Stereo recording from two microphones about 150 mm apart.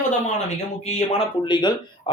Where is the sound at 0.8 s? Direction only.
45° left (ahead or behind).